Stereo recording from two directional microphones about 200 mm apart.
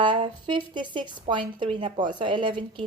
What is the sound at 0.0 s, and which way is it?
A woman's voice, 25° right (ahead or behind).